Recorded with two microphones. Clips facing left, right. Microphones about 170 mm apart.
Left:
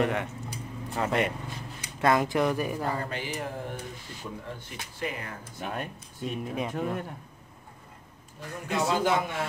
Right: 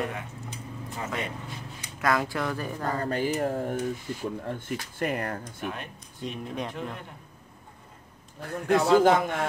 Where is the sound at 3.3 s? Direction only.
45° right (ahead or behind).